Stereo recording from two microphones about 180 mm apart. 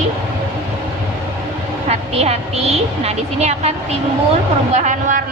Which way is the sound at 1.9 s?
35° right (ahead or behind).